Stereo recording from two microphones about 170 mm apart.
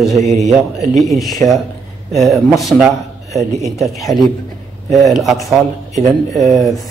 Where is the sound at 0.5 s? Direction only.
Centre (ahead or behind).